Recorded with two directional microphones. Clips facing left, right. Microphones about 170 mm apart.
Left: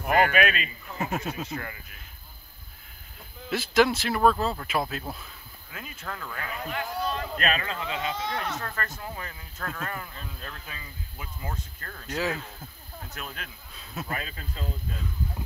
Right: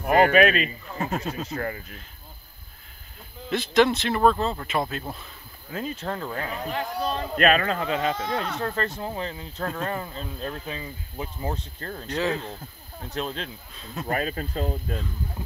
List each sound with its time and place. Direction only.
0.1 s a man's voice: 30° right (ahead or behind)
0.9 s speech: 5° left (ahead or behind)
1.5 s a man's voice: 40° right (ahead or behind)
3.4 s speech: 5° left (ahead or behind)
5.7 s a man's voice: 35° right (ahead or behind)
8.5 s speech: 30° right (ahead or behind)
12.1 s speech: 5° left (ahead or behind)
13.1 s speech: 30° right (ahead or behind)
14.0 s speech: 45° right (ahead or behind)